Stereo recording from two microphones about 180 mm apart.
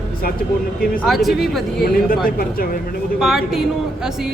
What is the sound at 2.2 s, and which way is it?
Speech, 55° left (ahead or behind).